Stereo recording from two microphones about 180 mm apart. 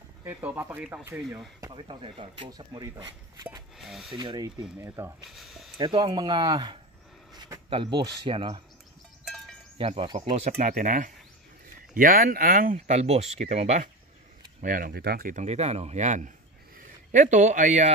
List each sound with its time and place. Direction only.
0.2 s speech: 10° right (ahead or behind)
1.6 s speech: 25° right (ahead or behind)
3.7 s speech: centre (ahead or behind)
4.2 s speech: 25° right (ahead or behind)
5.3 s speech: centre (ahead or behind)
5.8 s speech: 25° right (ahead or behind)
9.8 s speech: 30° right (ahead or behind)
10.6 s speech: 50° right (ahead or behind)
14.6 s a man's voice: 50° right (ahead or behind)